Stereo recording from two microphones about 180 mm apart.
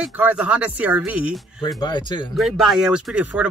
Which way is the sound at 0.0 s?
5° right (ahead or behind).